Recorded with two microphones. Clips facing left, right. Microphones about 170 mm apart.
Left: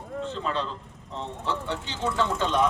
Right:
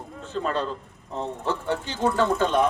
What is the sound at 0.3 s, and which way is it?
Speech, 50° right (ahead or behind).